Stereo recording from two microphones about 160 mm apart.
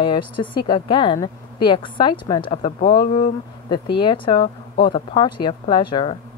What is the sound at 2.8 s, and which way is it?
Speech, 65° left (ahead or behind).